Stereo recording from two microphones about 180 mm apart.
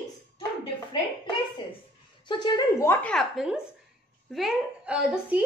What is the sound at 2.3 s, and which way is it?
Speech, 25° left (ahead or behind).